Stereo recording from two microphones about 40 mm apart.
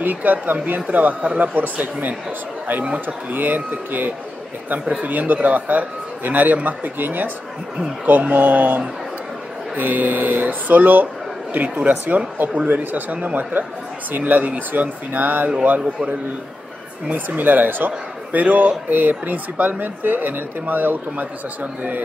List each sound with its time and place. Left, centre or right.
0.0 s a man's voice: right
2.8 s speech: right
3.3 s a man's voice: right
8.3 s a man's voice: right
12.6 s a man's voice: right
17.1 s a man's voice: right